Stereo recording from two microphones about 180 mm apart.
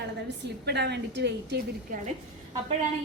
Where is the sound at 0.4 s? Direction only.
65° right (ahead or behind).